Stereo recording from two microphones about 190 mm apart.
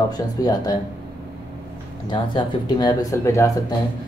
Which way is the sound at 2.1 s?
20° left (ahead or behind).